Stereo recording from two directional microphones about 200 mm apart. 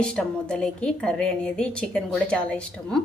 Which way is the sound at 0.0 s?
5° left (ahead or behind).